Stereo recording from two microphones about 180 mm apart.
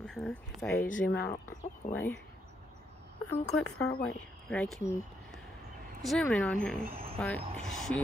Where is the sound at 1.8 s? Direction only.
40° left (ahead or behind).